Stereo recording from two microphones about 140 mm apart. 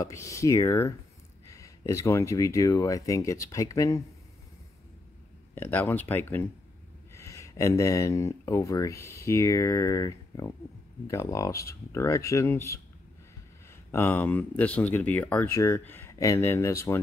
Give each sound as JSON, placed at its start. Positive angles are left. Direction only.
{"t": 0.0, "sound": "speech", "side_deg": 20}
{"t": 5.5, "sound": "speech", "side_deg": 15}
{"t": 13.9, "sound": "speech", "side_deg": 15}